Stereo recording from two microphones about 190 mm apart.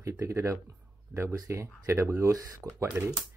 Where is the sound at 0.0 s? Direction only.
15° right (ahead or behind).